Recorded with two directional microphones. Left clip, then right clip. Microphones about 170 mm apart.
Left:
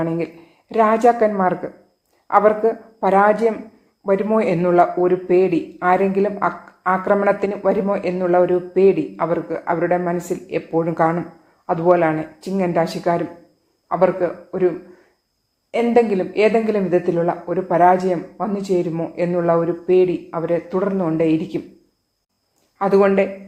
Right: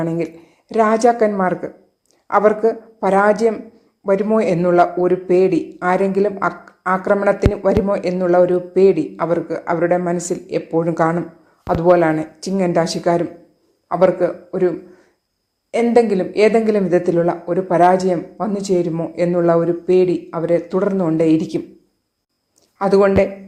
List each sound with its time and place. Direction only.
0.0 s a man's voice: 40° right (ahead or behind)
22.8 s speech: 35° right (ahead or behind)